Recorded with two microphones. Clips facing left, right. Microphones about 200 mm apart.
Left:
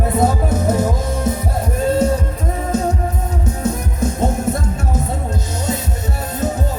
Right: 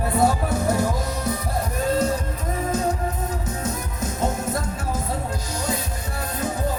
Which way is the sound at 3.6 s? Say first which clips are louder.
Left 8 dB; 30° left (ahead or behind).